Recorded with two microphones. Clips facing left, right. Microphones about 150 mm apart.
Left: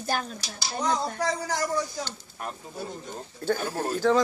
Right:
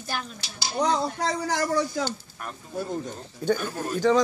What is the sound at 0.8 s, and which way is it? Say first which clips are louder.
A man's voice: right 3 dB; 75° right (ahead or behind).